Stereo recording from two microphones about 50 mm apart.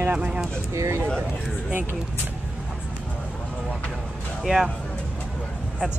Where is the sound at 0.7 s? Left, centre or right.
Right.